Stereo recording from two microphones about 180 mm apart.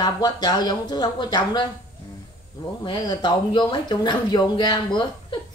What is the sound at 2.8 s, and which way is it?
Speech, 25° left (ahead or behind).